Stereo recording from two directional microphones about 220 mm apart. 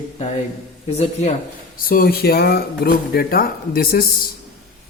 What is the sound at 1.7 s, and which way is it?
Speech, 40° left (ahead or behind).